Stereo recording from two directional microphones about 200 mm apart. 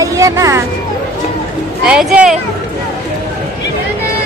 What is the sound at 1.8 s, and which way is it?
Speech, 5° right (ahead or behind).